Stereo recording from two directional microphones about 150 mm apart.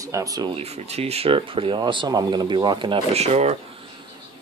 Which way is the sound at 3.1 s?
45° right (ahead or behind).